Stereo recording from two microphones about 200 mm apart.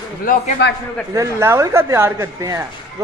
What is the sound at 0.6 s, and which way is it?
Speech, 55° left (ahead or behind).